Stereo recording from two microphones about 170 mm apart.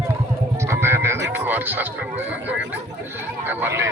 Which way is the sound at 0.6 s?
15° right (ahead or behind).